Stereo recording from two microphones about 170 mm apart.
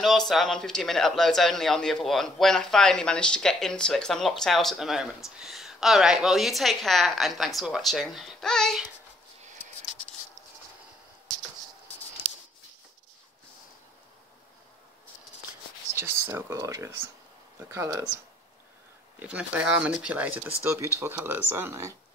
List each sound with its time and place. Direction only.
0.0 s a man's voice: centre (ahead or behind)
15.9 s speech: 15° right (ahead or behind)
19.1 s speech: 10° right (ahead or behind)